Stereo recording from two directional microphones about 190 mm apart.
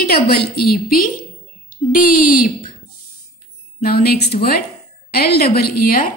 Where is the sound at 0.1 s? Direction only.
55° left (ahead or behind).